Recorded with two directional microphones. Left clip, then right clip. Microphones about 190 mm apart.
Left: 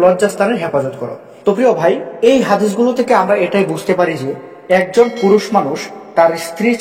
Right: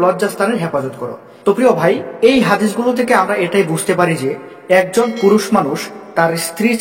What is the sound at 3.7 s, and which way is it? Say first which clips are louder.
Speech: even; 20° right (ahead or behind).